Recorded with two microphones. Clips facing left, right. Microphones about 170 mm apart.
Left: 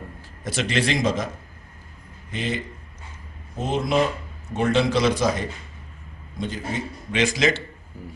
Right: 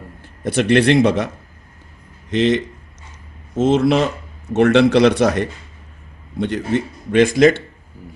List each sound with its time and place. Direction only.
0.2 s a man's voice: 60° right (ahead or behind)
2.3 s a man's voice: 80° right
4.6 s a man's voice: 70° right (ahead or behind); by 7.6 s 55° right (ahead or behind)